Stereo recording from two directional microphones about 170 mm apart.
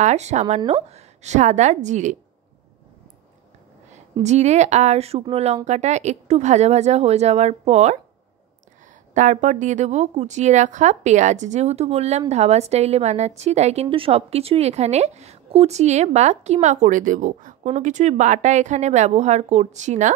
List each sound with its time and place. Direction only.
0.0 s a woman's voice: 40° right (ahead or behind)
4.2 s a woman's voice: 40° right (ahead or behind)
9.1 s a woman's voice: 45° right (ahead or behind)